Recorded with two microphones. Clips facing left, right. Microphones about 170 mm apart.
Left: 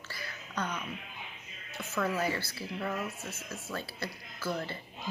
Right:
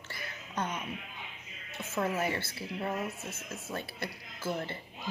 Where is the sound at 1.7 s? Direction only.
25° right (ahead or behind).